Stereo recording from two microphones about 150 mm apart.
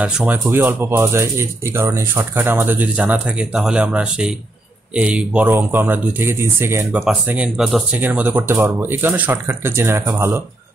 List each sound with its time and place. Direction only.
0.0 s speech: 5° right (ahead or behind)
7.0 s speech: 5° right (ahead or behind)